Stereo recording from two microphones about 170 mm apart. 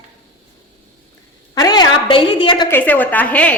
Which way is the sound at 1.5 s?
25° left (ahead or behind).